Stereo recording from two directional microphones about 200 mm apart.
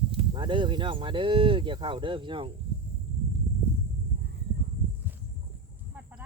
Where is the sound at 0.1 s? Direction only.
25° right (ahead or behind).